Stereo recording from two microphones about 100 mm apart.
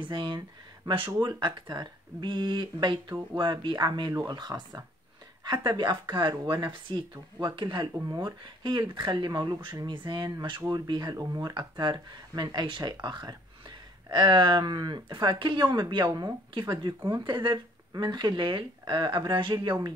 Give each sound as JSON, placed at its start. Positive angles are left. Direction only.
{"t": 0.0, "sound": "speech", "side_deg": -55}
{"t": 16.8, "sound": "speech", "side_deg": -50}